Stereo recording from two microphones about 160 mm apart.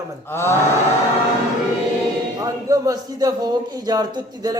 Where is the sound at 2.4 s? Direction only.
20° right (ahead or behind).